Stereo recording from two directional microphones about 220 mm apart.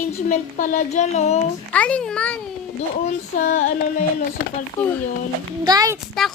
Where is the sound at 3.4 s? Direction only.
30° left (ahead or behind).